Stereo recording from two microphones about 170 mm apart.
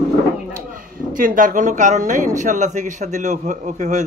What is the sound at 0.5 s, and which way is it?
A man's voice, 55° right (ahead or behind).